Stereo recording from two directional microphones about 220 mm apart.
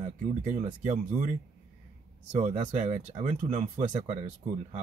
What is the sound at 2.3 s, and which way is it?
Speech, 30° right (ahead or behind).